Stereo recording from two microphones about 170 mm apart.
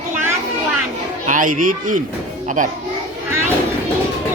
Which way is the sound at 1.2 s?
50° right (ahead or behind).